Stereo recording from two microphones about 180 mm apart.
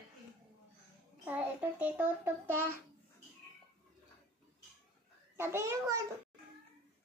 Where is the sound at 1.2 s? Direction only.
10° right (ahead or behind).